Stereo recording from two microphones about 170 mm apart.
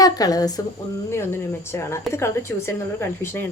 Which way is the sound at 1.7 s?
15° left (ahead or behind).